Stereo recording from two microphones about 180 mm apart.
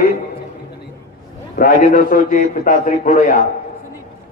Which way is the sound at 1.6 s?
50° left (ahead or behind).